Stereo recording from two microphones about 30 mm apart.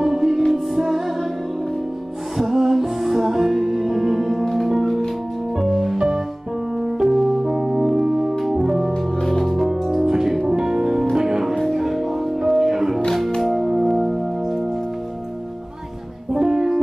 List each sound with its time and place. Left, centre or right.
0.0 s music: centre
2.3 s music: centre
5.9 s music: centre
8.5 s organ: centre
8.9 s music: centre
9.4 s music: centre
10.0 s music: centre
16.3 s music: centre